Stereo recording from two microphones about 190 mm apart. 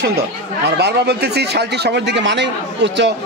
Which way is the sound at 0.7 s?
60° right (ahead or behind).